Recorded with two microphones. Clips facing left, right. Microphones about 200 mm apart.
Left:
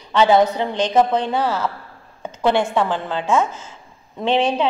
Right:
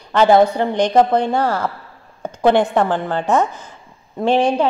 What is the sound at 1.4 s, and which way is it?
Speech, 55° right (ahead or behind).